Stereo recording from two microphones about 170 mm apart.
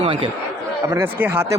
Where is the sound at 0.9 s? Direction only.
10° right (ahead or behind).